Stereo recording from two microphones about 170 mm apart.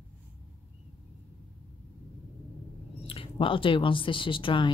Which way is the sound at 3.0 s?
35° left (ahead or behind).